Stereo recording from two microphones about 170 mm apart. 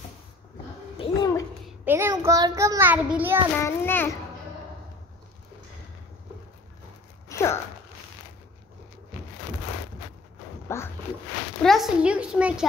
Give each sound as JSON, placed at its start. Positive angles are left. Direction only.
{"t": 0.9, "sound": "a sound", "side_deg": 30}
{"t": 1.9, "sound": "a child's voice", "side_deg": -15}
{"t": 3.5, "sound": "a child's voice", "side_deg": 10}
{"t": 7.2, "sound": "a sound", "side_deg": 15}
{"t": 10.7, "sound": "a child's voice", "side_deg": 15}
{"t": 11.6, "sound": "a woman's voice", "side_deg": 0}